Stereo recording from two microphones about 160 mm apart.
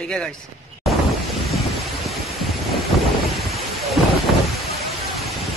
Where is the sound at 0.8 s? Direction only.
Centre (ahead or behind).